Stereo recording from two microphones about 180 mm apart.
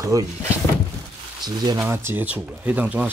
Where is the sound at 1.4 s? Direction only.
20° right (ahead or behind).